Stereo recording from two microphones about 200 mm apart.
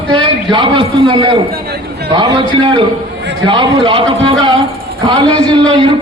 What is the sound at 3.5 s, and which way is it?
A man's voice, 25° right (ahead or behind).